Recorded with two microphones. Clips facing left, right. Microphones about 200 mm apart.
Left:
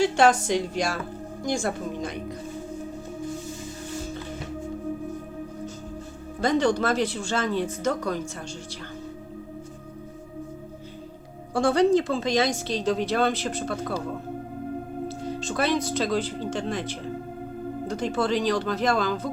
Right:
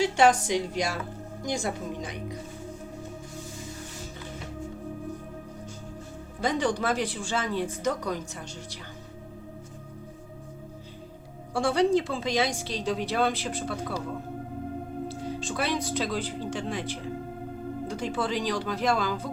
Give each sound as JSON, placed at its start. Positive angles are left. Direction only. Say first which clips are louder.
{"t": 0.2, "sound": "speech", "louder": "left 2 dB", "side_deg": -15}
{"t": 6.4, "sound": "speech", "louder": "left 4 dB", "side_deg": -10}
{"t": 11.5, "sound": "speech", "louder": "left 3 dB", "side_deg": -10}
{"t": 15.0, "sound": "speech", "louder": "left 2 dB", "side_deg": -10}